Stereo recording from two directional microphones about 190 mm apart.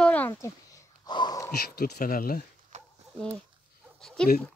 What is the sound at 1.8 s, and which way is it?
Speech, 50° left (ahead or behind).